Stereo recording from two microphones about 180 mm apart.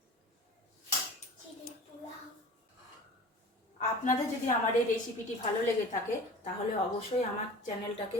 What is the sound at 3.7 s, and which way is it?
Speech, 45° left (ahead or behind).